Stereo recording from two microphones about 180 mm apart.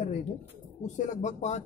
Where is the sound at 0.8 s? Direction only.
45° left (ahead or behind).